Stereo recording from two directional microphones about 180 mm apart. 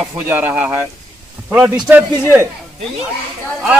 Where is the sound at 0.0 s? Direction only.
10° right (ahead or behind).